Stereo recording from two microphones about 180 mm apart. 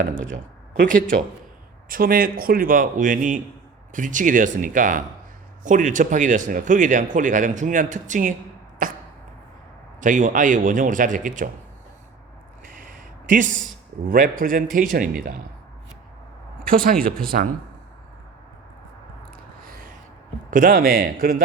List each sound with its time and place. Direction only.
1.9 s speech: 50° right (ahead or behind)
8.8 s arrow: 45° right (ahead or behind)
10.0 s speech: 45° right (ahead or behind)
12.6 s a sound: 50° right (ahead or behind)
14.1 s speech: 50° right (ahead or behind)
16.6 s speech: 55° right (ahead or behind)
20.5 s speech: 50° right (ahead or behind)